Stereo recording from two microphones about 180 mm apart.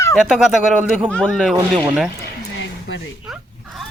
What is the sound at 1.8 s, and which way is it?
Speech, 10° right (ahead or behind).